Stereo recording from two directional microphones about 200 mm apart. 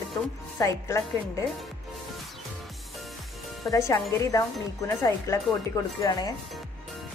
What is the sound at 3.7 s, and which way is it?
A woman's voice, 15° left (ahead or behind).